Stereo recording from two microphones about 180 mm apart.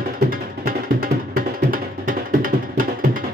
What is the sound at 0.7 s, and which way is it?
Music, 55° right (ahead or behind).